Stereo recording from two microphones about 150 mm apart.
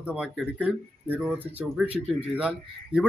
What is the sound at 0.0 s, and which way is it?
A man's voice, 5° right (ahead or behind).